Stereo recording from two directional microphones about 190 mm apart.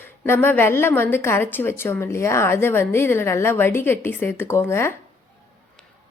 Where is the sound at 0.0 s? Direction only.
10° left (ahead or behind).